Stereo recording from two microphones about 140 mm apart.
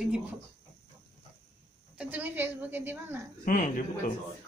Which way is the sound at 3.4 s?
70° left (ahead or behind).